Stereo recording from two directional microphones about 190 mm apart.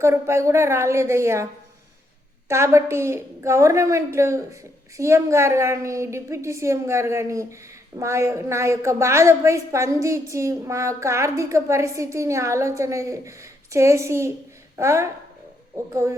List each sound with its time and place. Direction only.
0.0 s a woman's voice: 15° right (ahead or behind)
2.5 s a woman's voice: 15° right (ahead or behind)